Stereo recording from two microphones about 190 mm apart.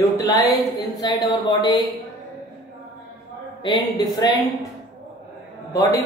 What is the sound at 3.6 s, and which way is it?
Speech, 25° left (ahead or behind).